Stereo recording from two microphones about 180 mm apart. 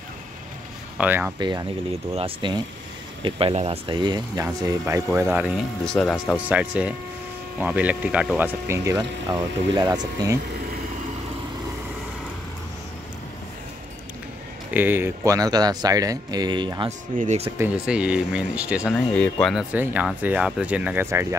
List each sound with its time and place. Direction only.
0.9 s speech: 10° right (ahead or behind)
1.4 s speech: 25° right (ahead or behind)
5.9 s speech: centre (ahead or behind); by 10.3 s 25° right (ahead or behind)
14.7 s speech: 10° right (ahead or behind); by 16.9 s 25° right (ahead or behind)
17.2 s speech: 40° right (ahead or behind)
17.6 s speech: 5° right (ahead or behind)
19.1 s speech: 5° left (ahead or behind)
19.7 s speech: 10° right (ahead or behind)